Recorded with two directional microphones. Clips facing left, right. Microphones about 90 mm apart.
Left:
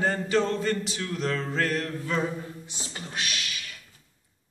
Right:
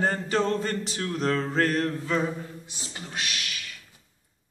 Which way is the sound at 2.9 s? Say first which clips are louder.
Even; 25° right (ahead or behind).